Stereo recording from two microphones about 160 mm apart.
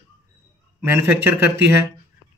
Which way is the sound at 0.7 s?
15° right (ahead or behind).